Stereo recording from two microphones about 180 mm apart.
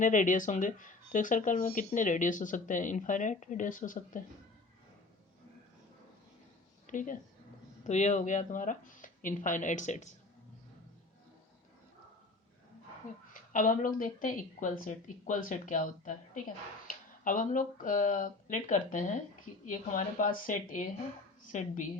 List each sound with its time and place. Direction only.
0.0 s speech: 45° left (ahead or behind)
6.8 s a woman's voice: 45° left (ahead or behind)
13.3 s speech: 45° left (ahead or behind)